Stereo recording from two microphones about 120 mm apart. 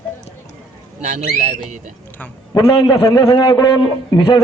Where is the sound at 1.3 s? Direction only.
75° right (ahead or behind).